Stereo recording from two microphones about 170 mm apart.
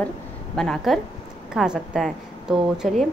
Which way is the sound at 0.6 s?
5° left (ahead or behind).